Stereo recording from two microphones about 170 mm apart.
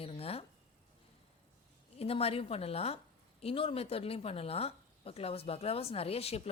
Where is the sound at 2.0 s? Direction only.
35° left (ahead or behind).